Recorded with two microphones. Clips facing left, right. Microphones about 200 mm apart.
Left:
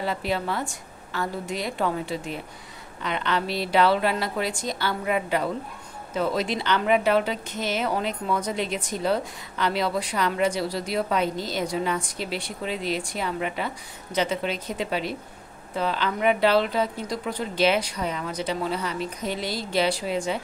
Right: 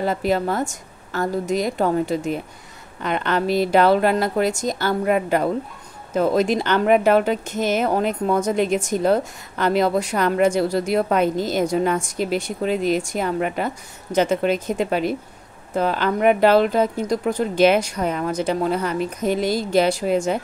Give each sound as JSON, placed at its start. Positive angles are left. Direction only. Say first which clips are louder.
{"t": 0.0, "sound": "speech", "louder": "right 6 dB", "side_deg": -45}